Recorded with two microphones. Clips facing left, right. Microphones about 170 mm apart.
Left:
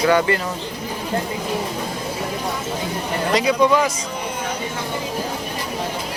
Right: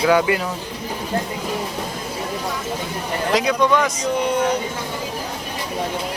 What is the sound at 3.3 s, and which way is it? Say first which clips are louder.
Speech: left 1 dB; 5° left (ahead or behind).